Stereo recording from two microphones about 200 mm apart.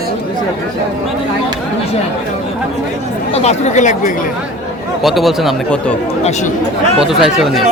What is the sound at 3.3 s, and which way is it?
Speech, 35° left (ahead or behind).